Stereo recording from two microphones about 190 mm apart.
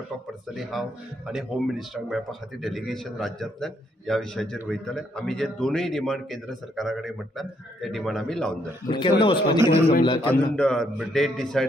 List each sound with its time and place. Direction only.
0.6 s a man's voice: centre (ahead or behind)
8.8 s a man's voice: 25° left (ahead or behind)
10.5 s a man's voice: 5° left (ahead or behind)